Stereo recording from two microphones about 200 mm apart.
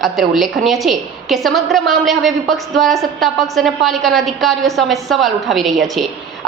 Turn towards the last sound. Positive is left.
turn(degrees=0)  # may be behind; listen again after turning